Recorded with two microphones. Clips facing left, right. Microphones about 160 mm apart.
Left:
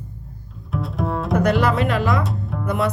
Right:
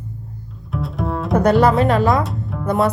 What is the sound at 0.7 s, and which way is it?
Bowed string instrument, centre (ahead or behind).